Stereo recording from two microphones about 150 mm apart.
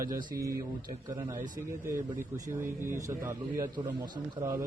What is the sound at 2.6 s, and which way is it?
A man's voice, 20° right (ahead or behind).